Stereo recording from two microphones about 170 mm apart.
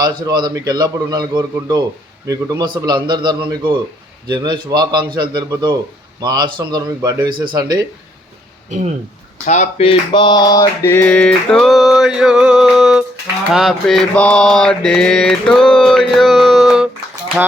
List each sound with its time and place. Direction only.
0.0 s a man's voice: 25° right (ahead or behind)
9.5 s male singing: 40° left (ahead or behind); by 13.1 s 5° right (ahead or behind)
13.5 s mantra: centre (ahead or behind)